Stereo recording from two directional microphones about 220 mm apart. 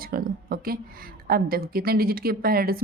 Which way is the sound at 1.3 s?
45° right (ahead or behind).